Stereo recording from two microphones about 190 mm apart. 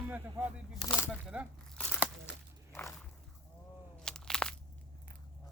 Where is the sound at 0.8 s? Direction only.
20° left (ahead or behind).